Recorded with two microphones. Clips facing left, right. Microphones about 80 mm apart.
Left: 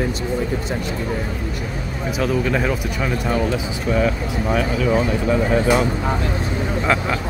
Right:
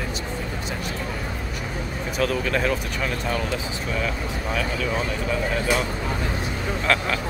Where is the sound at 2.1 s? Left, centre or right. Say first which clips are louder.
Left 3 dB; centre.